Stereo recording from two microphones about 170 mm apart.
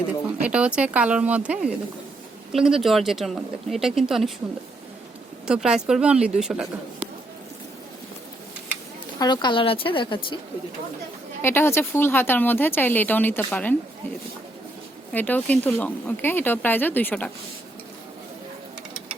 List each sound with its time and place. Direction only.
0.4 s speech: 5° right (ahead or behind)
5.5 s speech: 5° right (ahead or behind)
9.1 s speech: 25° left (ahead or behind)
11.4 s speech: 15° left (ahead or behind)
15.1 s speech: 10° left (ahead or behind)